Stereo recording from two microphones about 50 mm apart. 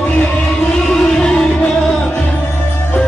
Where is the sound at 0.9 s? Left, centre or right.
Centre.